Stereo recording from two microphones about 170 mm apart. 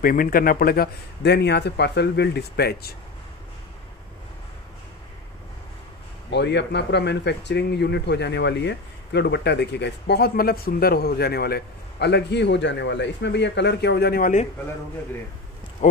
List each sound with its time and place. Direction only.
0.0 s a man's voice: 55° left (ahead or behind)
6.3 s speech: 90° left; by 14.5 s 50° left (ahead or behind)
15.8 s speech: 45° left (ahead or behind)